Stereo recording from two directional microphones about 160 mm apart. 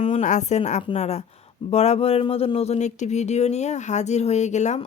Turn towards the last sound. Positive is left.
turn(degrees=45)  # may be behind; listen again after turning